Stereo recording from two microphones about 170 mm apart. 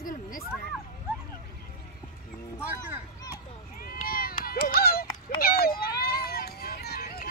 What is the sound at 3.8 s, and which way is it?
Run, 55° left (ahead or behind).